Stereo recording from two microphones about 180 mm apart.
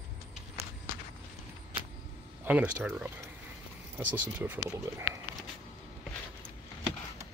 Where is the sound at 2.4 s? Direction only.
10° right (ahead or behind).